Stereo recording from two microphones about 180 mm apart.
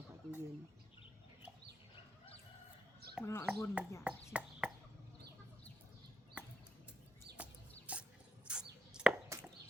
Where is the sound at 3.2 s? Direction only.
15° left (ahead or behind).